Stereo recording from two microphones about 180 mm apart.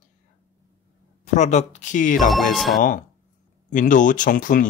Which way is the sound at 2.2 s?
Centre (ahead or behind).